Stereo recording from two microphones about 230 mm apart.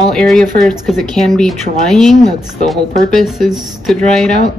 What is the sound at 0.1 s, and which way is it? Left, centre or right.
Speech, centre.